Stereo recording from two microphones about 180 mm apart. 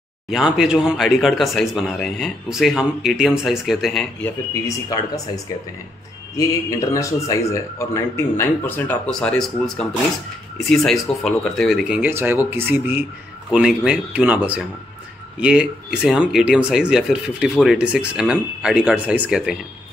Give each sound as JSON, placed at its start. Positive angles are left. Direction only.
{"t": 0.3, "sound": "speech", "side_deg": -5}
{"t": 4.6, "sound": "speech", "side_deg": 20}
{"t": 10.9, "sound": "speech", "side_deg": 0}